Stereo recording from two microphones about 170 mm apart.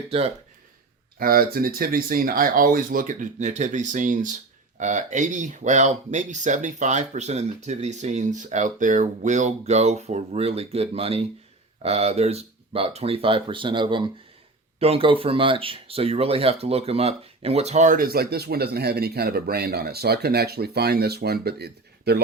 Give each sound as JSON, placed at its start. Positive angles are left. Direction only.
{"t": 1.2, "sound": "speech", "side_deg": -60}